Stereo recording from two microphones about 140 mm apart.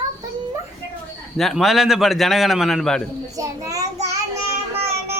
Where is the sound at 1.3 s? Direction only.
Centre (ahead or behind).